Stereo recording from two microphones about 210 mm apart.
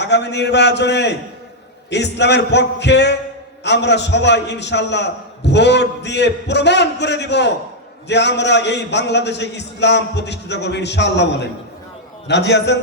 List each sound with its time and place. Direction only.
0.0 s a man's voice: 55° left (ahead or behind)